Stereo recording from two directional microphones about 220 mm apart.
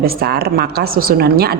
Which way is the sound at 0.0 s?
45° right (ahead or behind).